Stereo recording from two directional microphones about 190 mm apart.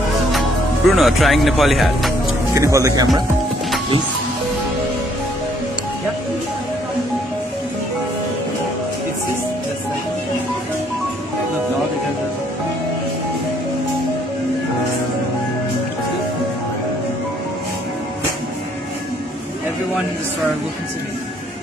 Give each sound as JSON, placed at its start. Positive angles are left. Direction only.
{"t": 0.3, "sound": "speech", "side_deg": 0}
{"t": 2.5, "sound": "speech", "side_deg": -15}